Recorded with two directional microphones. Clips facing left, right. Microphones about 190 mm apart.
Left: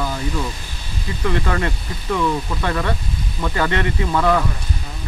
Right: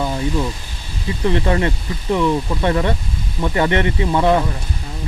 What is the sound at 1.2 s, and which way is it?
Speech, 20° right (ahead or behind).